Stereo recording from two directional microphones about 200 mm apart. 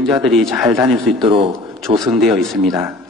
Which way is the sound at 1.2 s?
25° right (ahead or behind).